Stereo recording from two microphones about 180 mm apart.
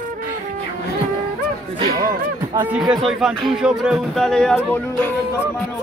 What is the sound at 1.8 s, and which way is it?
Speech, 20° right (ahead or behind).